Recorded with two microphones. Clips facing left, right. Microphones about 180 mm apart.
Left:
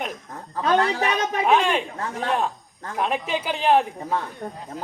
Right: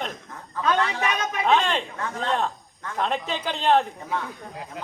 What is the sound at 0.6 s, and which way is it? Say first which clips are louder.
Speech: left 3 dB; 35° left (ahead or behind).